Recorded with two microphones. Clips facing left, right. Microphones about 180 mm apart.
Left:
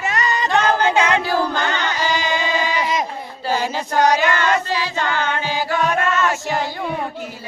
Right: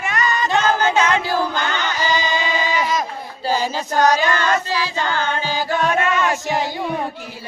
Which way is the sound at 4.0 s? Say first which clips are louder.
Even; 20° left (ahead or behind).